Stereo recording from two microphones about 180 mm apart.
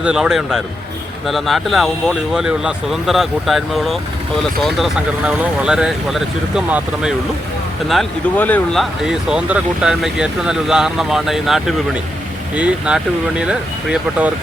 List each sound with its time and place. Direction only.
0.0 s speech: 5° right (ahead or behind)
7.9 s speech: 5° left (ahead or behind)